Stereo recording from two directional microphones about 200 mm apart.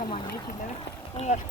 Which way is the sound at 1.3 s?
35° left (ahead or behind).